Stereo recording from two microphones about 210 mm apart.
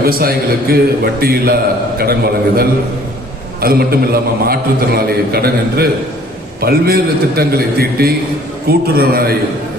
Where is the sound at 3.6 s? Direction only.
45° right (ahead or behind).